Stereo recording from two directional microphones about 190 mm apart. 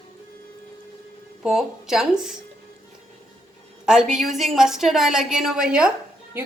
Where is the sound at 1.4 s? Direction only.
Centre (ahead or behind).